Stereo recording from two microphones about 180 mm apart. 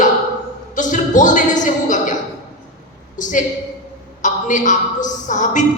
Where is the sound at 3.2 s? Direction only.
45° left (ahead or behind).